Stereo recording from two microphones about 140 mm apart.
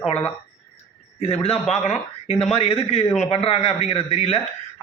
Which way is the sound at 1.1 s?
45° left (ahead or behind).